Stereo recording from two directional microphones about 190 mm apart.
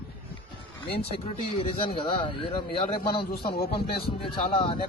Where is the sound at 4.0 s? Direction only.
30° left (ahead or behind).